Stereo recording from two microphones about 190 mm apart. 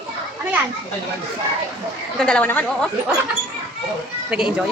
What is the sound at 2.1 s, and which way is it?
Speech, 5° left (ahead or behind).